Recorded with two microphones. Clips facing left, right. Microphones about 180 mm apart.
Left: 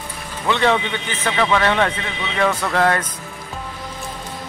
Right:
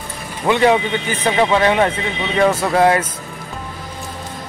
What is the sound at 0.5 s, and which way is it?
A man's voice, 15° right (ahead or behind).